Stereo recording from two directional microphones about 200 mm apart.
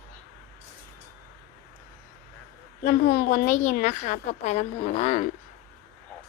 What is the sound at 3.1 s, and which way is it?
A woman's voice, 45° left (ahead or behind).